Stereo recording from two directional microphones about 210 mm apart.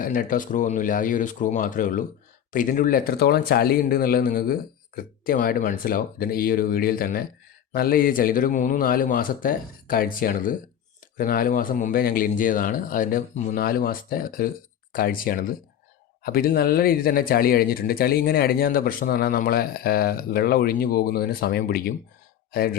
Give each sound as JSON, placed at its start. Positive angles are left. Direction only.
{"t": 0.0, "sound": "a man's voice", "side_deg": 40}